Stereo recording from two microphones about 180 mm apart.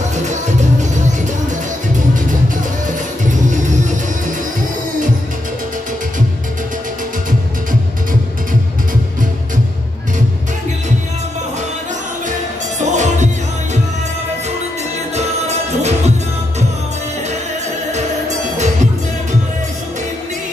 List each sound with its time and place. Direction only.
0.1 s music: 40° right (ahead or behind)
2.9 s music: 45° right (ahead or behind)
12.8 s music: 40° right (ahead or behind)
15.1 s music: 40° right (ahead or behind)
17.9 s music: 40° right (ahead or behind)